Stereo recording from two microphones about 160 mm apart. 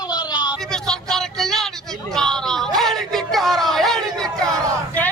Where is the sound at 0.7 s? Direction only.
5° left (ahead or behind).